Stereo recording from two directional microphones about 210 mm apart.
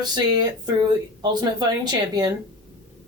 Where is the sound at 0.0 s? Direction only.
20° right (ahead or behind).